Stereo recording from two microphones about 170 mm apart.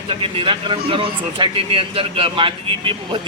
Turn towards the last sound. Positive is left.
turn(degrees=-30)  # may be behind; listen again after turning